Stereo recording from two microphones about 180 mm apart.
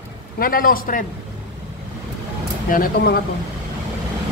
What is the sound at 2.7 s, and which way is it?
Speech, 50° left (ahead or behind).